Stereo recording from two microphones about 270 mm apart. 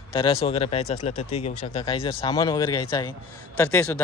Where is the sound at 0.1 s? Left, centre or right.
Centre.